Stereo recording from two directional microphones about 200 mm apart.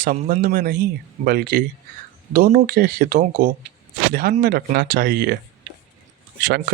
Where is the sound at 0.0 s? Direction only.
45° right (ahead or behind).